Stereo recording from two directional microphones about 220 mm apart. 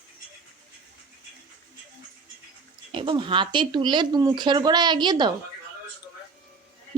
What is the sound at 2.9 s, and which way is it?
Speech, 20° right (ahead or behind).